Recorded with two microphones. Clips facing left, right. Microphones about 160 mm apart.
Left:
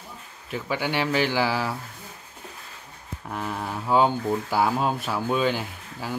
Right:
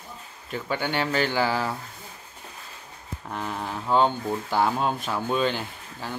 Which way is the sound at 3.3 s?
Centre (ahead or behind).